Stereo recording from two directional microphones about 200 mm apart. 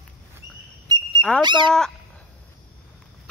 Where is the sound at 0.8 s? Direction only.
20° right (ahead or behind).